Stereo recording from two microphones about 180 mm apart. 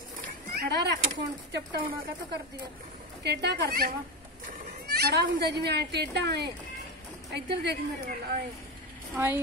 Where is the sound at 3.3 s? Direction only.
70° right (ahead or behind).